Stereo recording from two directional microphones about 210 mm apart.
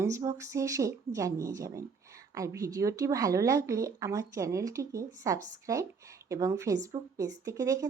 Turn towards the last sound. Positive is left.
turn(degrees=-15)  # may be behind; listen again after turning